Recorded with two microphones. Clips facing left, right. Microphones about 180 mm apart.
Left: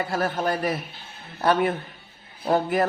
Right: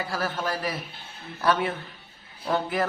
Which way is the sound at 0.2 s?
40° left (ahead or behind).